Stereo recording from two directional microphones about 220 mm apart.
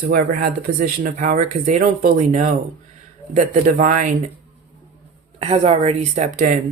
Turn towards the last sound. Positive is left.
turn(degrees=-35)  # may be behind; listen again after turning